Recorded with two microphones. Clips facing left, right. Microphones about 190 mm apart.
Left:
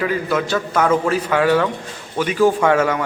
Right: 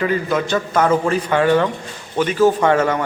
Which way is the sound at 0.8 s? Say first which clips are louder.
Even; 10° right (ahead or behind).